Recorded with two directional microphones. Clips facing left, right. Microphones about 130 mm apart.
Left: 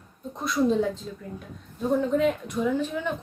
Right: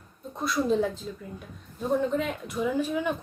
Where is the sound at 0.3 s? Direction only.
Centre (ahead or behind).